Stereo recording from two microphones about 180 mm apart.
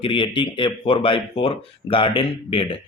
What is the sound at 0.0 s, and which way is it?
Speech, 30° left (ahead or behind).